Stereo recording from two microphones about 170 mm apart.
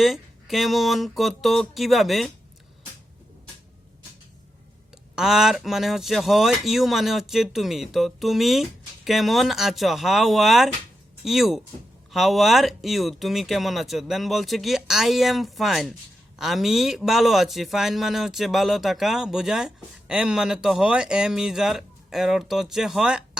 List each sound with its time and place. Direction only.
0.0 s a man's voice: centre (ahead or behind)
5.1 s a man's voice: 5° right (ahead or behind)